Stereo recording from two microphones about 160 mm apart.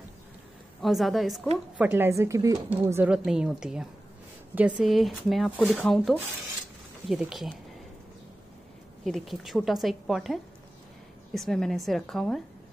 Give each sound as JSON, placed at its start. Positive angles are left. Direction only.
{"t": 0.8, "sound": "a woman's voice", "side_deg": 0}
{"t": 1.8, "sound": "a woman's voice", "side_deg": -15}
{"t": 9.0, "sound": "a woman's voice", "side_deg": 0}